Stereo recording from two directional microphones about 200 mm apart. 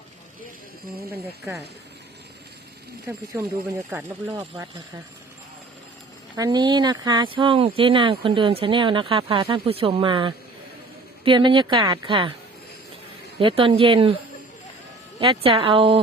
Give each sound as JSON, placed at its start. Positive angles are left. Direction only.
{"t": 3.8, "sound": "speech", "side_deg": -10}
{"t": 6.3, "sound": "speech", "side_deg": -20}
{"t": 13.4, "sound": "speech", "side_deg": -25}
{"t": 15.2, "sound": "speech", "side_deg": -25}